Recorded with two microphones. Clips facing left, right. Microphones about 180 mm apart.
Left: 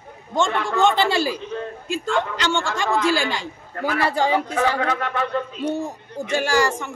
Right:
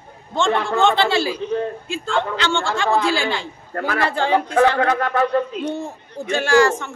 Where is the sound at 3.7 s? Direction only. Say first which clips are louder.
Right 1 dB; 50° right (ahead or behind).